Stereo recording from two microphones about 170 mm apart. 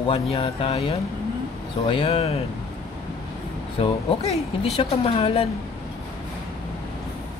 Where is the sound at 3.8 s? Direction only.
35° left (ahead or behind).